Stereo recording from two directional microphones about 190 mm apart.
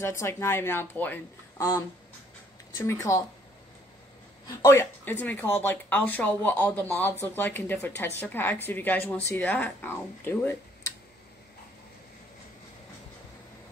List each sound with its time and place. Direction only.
0.0 s speech: 15° left (ahead or behind)
4.6 s speech: 15° left (ahead or behind)